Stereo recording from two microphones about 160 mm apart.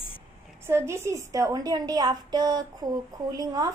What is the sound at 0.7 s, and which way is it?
A woman's voice, 15° right (ahead or behind).